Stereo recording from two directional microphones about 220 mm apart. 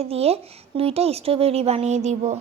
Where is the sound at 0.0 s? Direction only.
25° right (ahead or behind).